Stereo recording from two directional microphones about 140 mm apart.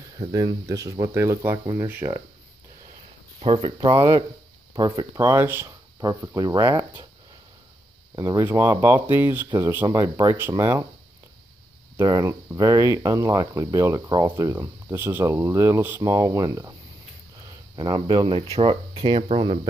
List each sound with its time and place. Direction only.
0.3 s speech: 25° right (ahead or behind)
3.3 s speech: 40° right (ahead or behind)
5.2 s speech: 15° right (ahead or behind)
8.2 s speech: 20° right (ahead or behind)
12.1 s speech: 25° right (ahead or behind)
17.7 s speech: 35° right (ahead or behind)